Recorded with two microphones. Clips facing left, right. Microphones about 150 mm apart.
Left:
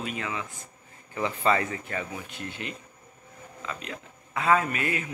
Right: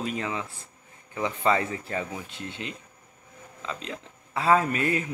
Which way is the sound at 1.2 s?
15° right (ahead or behind).